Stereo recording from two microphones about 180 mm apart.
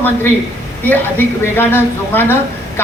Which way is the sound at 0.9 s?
10° left (ahead or behind).